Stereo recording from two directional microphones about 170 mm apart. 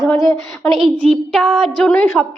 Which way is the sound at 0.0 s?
Centre (ahead or behind).